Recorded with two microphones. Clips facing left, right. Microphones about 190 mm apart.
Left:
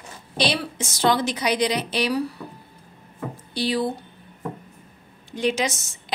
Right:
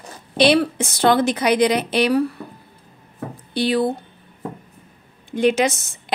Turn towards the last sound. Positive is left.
turn(degrees=-60)  # may be behind; listen again after turning